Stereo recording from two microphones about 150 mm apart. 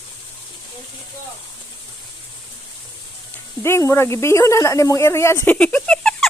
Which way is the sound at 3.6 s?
20° left (ahead or behind).